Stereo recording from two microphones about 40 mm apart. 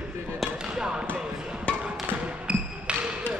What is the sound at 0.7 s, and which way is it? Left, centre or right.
Speech, centre.